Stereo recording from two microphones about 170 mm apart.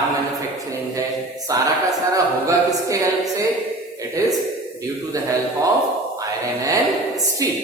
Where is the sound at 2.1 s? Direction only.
20° right (ahead or behind).